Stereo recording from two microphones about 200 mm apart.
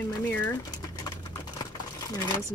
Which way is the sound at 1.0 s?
20° left (ahead or behind).